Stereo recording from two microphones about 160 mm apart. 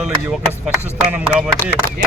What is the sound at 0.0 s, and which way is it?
Speech, 5° right (ahead or behind).